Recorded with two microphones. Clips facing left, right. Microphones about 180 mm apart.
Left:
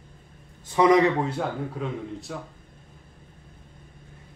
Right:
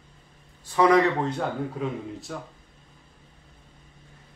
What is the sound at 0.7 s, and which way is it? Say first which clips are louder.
Speech: left 1 dB; 20° left (ahead or behind).